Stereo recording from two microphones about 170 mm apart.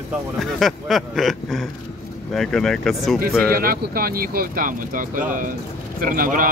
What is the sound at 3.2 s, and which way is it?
Speech, 60° right (ahead or behind).